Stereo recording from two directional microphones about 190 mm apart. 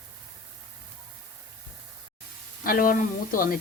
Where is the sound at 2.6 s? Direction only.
45° left (ahead or behind).